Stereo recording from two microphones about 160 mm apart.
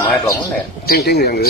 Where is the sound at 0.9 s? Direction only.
90° left.